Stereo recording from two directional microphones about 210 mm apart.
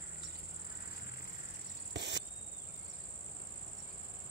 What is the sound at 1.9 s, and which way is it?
Cricket, 55° right (ahead or behind).